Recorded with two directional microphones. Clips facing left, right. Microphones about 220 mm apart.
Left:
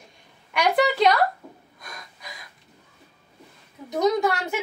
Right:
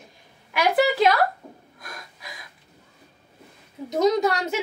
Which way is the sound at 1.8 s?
Centre (ahead or behind).